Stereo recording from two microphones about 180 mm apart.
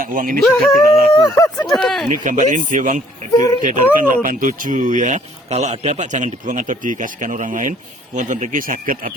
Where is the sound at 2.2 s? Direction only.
45° right (ahead or behind).